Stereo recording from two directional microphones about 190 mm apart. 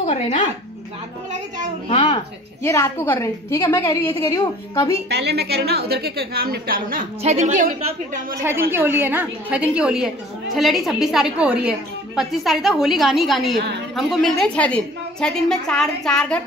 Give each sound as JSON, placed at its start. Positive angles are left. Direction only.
{"t": 0.0, "sound": "speech", "side_deg": 40}
{"t": 2.6, "sound": "a woman's voice", "side_deg": 15}
{"t": 5.1, "sound": "a woman's voice", "side_deg": -60}
{"t": 8.4, "sound": "a woman's voice", "side_deg": -10}
{"t": 13.6, "sound": "a woman's voice", "side_deg": -60}
{"t": 13.9, "sound": "a woman's voice", "side_deg": 0}